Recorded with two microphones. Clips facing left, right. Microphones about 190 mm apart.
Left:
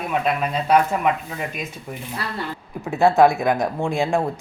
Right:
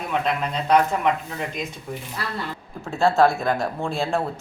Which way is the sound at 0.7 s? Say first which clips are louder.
Left 1 dB; 10° left (ahead or behind).